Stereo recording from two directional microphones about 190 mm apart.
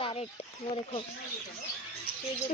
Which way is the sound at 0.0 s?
30° left (ahead or behind).